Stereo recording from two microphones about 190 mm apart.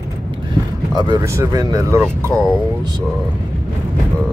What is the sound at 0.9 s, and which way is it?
Speech, 25° right (ahead or behind).